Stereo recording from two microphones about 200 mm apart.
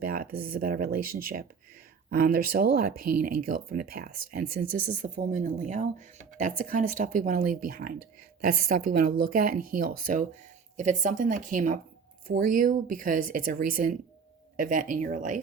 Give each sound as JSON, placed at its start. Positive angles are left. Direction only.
{"t": 0.0, "sound": "speech", "side_deg": -45}